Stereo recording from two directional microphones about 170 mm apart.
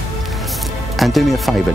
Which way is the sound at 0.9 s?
Centre (ahead or behind).